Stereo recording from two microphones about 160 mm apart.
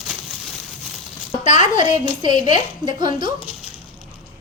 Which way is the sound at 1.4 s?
45° left (ahead or behind).